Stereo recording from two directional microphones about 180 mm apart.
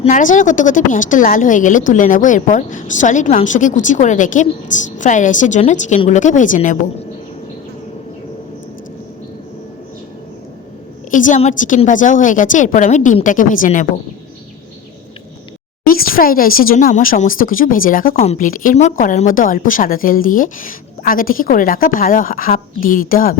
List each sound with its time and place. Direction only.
0.0 s speech: 45° left (ahead or behind)
11.1 s speech: 45° left (ahead or behind)
15.9 s speech: 55° left (ahead or behind)